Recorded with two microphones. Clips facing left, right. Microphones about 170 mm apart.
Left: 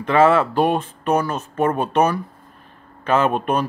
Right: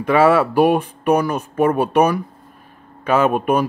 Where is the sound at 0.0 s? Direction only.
10° right (ahead or behind).